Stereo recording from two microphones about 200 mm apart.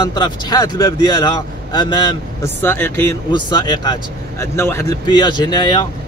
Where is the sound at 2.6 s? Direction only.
10° left (ahead or behind).